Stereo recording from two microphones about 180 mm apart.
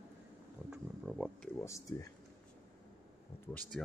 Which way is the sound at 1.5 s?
15° left (ahead or behind).